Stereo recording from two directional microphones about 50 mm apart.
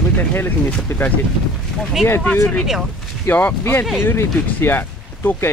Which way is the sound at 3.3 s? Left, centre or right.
Left.